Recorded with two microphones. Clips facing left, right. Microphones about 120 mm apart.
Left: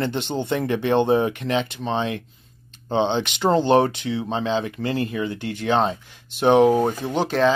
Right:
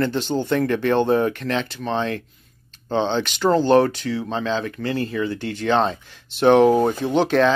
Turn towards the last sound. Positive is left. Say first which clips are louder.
# right 2 dB
turn(degrees=5)  # may be behind; listen again after turning